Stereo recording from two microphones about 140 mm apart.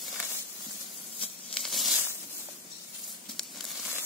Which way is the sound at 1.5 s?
Centre (ahead or behind).